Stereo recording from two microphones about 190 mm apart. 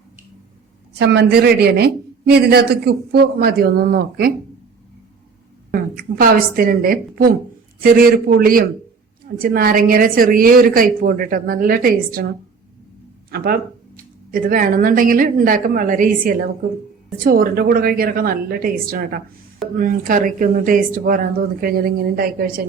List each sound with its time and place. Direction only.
0.9 s speech: 65° right (ahead or behind)
5.7 s a woman's voice: 50° right (ahead or behind)
13.3 s speech: 50° right (ahead or behind)